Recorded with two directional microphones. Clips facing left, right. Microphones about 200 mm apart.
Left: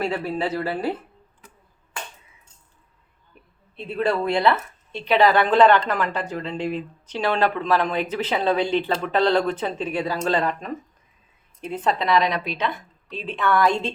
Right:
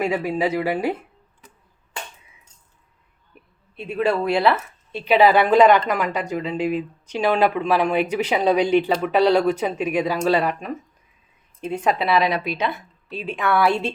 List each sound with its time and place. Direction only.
0.0 s speech: 15° right (ahead or behind)
3.8 s speech: 10° right (ahead or behind)